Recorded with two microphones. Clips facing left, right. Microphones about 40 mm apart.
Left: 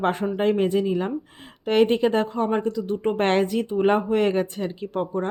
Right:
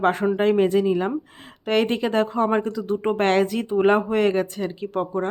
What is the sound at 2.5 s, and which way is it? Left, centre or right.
Speech, centre.